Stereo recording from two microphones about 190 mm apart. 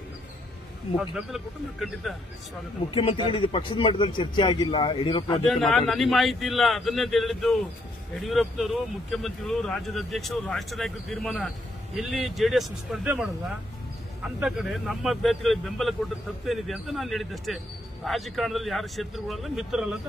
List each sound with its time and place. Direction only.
0.9 s speech: centre (ahead or behind)
2.9 s a man's voice: 25° left (ahead or behind)
5.5 s speech: centre (ahead or behind)
14.4 s speech: centre (ahead or behind)